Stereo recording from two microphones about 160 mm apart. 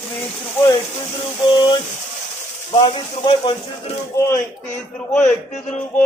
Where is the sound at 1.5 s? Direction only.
30° left (ahead or behind).